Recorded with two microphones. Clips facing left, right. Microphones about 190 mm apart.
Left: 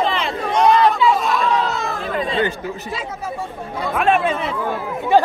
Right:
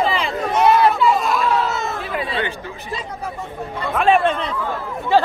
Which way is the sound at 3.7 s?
5° left (ahead or behind).